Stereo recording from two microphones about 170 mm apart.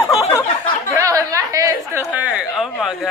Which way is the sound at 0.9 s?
20° right (ahead or behind).